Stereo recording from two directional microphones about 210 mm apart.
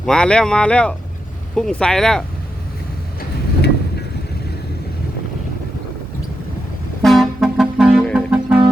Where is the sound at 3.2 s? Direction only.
50° left (ahead or behind).